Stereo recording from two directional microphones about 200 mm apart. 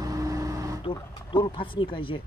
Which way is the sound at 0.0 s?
15° right (ahead or behind).